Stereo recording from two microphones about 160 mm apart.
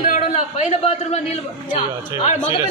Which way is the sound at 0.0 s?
55° left (ahead or behind).